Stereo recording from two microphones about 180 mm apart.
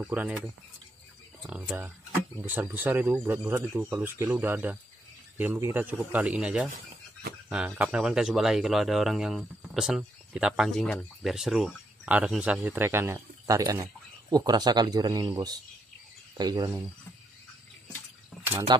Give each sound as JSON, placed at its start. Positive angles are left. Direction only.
{"t": 0.0, "sound": "speech", "side_deg": -5}
{"t": 1.5, "sound": "speech", "side_deg": -5}
{"t": 18.4, "sound": "speech", "side_deg": -15}